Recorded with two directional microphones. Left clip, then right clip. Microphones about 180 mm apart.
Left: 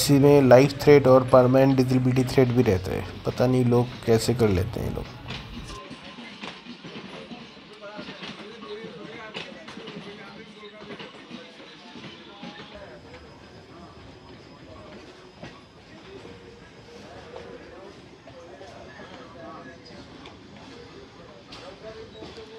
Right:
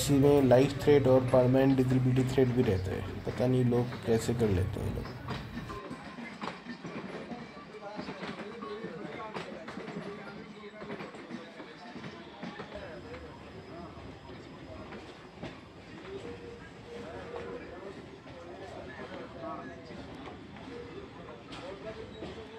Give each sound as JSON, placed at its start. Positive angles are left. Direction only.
{"t": 0.0, "sound": "speech", "side_deg": 20}